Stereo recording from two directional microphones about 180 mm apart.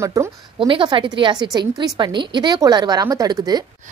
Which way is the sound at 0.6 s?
25° right (ahead or behind).